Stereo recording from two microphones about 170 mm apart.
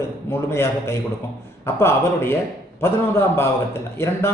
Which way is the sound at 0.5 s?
15° left (ahead or behind).